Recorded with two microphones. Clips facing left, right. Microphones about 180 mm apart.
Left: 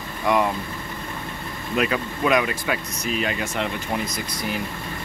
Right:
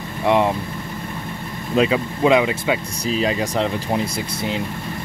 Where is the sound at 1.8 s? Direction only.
25° right (ahead or behind).